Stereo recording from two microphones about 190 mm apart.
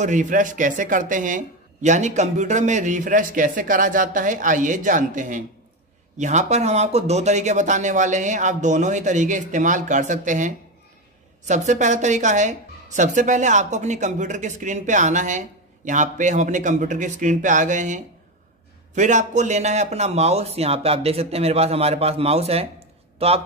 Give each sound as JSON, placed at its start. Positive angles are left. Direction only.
{"t": 0.0, "sound": "a woman's voice", "side_deg": -40}